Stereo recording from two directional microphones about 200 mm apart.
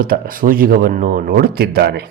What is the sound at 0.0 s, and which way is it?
A man's voice, 45° right (ahead or behind).